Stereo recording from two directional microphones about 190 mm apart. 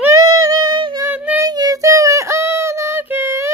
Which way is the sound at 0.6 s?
25° right (ahead or behind).